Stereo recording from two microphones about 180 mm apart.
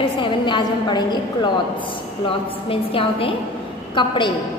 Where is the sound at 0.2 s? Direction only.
25° left (ahead or behind).